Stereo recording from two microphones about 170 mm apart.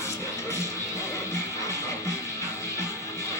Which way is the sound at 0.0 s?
15° left (ahead or behind).